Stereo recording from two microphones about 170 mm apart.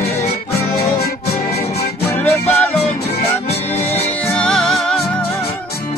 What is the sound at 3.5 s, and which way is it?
Music, 40° left (ahead or behind).